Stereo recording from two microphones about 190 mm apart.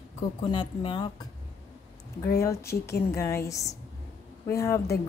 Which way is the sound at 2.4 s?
15° left (ahead or behind).